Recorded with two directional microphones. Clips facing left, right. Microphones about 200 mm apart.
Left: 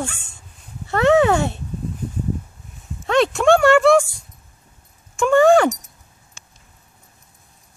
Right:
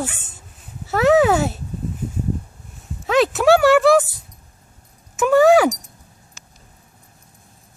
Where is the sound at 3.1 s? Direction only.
5° right (ahead or behind).